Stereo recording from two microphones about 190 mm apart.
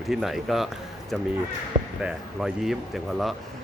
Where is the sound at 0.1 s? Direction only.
Centre (ahead or behind).